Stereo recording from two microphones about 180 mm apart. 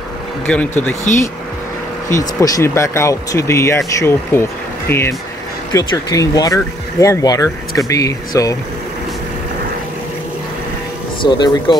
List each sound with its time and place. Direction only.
0.5 s speech: 10° left (ahead or behind)
2.1 s speech: 20° left (ahead or behind)
11.2 s speech: 25° left (ahead or behind)